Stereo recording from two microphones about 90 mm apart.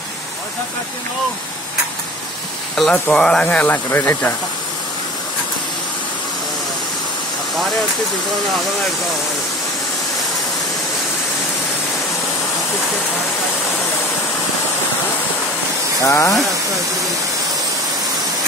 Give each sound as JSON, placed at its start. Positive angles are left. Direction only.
{"t": 2.7, "sound": "speech", "side_deg": 5}
{"t": 3.4, "sound": "speech", "side_deg": 20}
{"t": 16.0, "sound": "speech", "side_deg": 35}